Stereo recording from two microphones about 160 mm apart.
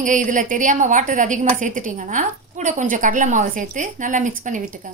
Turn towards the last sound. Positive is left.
turn(degrees=-55)  # may be behind; listen again after turning